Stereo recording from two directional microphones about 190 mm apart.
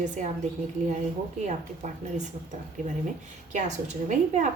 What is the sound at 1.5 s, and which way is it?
Speech, 40° right (ahead or behind).